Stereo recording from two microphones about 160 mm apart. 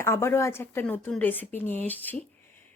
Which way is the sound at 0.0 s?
15° left (ahead or behind).